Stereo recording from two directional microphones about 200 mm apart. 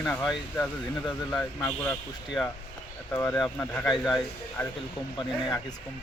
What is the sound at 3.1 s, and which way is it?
Speech, 10° left (ahead or behind).